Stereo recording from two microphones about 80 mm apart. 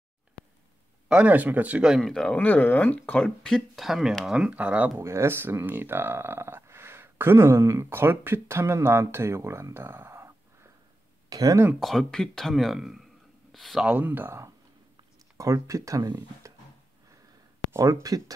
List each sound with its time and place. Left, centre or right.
1.0 s speech: centre
1.9 s speech: centre
2.3 s speech: left; by 4.5 s centre
4.5 s speech: centre
4.9 s speech: right
11.2 s speech: right
11.8 s speech: centre
13.8 s speech: right
15.3 s speech: right
17.7 s speech: right